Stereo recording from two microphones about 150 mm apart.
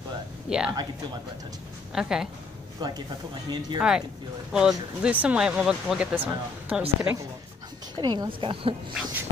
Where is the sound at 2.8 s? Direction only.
25° right (ahead or behind).